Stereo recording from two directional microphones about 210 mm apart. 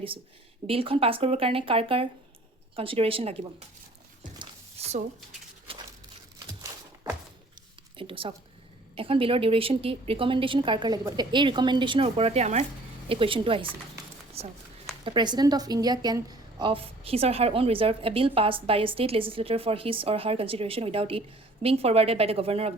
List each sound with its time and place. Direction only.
0.7 s a woman's voice: 25° right (ahead or behind)
4.4 s a sound: 30° right (ahead or behind); by 7.2 s 15° right (ahead or behind)
7.9 s a woman's voice: 25° right (ahead or behind)